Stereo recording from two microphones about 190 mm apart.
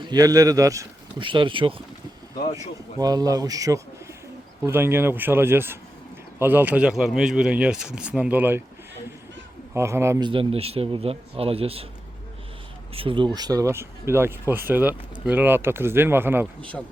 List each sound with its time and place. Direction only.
0.1 s speech: 20° right (ahead or behind)
9.7 s a man's voice: 15° right (ahead or behind); by 11.9 s 30° right (ahead or behind)
12.9 s speech: 30° right (ahead or behind); by 16.5 s 10° right (ahead or behind)